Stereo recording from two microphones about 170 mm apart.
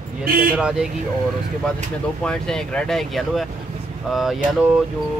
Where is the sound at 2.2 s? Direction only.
5° left (ahead or behind).